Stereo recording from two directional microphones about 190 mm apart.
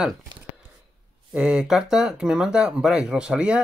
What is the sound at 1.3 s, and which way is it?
Speech, 5° right (ahead or behind).